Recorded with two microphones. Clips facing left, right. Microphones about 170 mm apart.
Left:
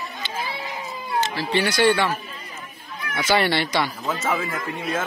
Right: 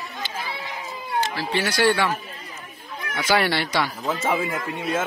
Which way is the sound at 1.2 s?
5° right (ahead or behind).